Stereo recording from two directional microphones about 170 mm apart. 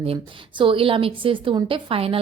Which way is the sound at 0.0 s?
30° right (ahead or behind).